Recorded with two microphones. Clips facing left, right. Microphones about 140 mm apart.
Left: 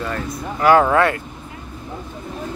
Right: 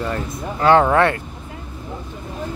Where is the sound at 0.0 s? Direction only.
25° right (ahead or behind).